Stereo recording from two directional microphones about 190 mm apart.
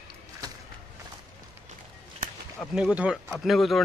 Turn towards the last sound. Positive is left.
turn(degrees=0)  # may be behind; listen again after turning